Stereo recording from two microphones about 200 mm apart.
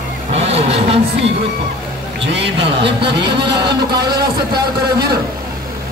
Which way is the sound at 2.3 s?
60° right (ahead or behind).